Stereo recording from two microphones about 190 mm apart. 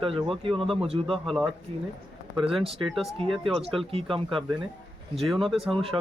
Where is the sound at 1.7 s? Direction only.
30° right (ahead or behind).